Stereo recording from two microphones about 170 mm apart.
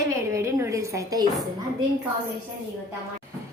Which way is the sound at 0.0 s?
15° right (ahead or behind).